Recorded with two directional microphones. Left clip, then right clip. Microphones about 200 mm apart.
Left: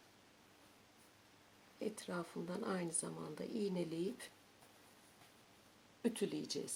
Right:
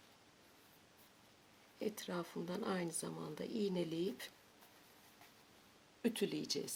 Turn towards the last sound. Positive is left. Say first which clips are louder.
# right 2 dB
turn(degrees=-5)  # may be behind; listen again after turning